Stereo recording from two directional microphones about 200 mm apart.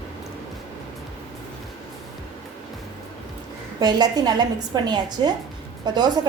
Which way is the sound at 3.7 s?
20° right (ahead or behind).